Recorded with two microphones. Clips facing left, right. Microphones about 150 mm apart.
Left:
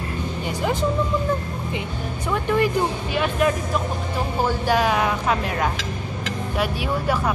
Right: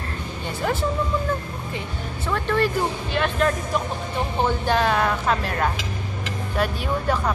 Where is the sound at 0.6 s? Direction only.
15° left (ahead or behind).